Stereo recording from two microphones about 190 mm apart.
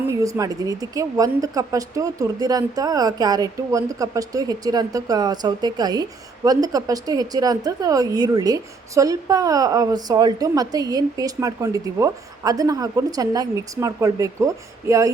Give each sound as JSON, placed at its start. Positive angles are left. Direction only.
{"t": 0.1, "sound": "a woman's voice", "side_deg": -15}